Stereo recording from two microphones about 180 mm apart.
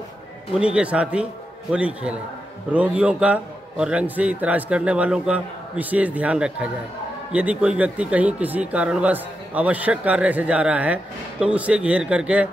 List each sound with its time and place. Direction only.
0.7 s speech: 5° right (ahead or behind)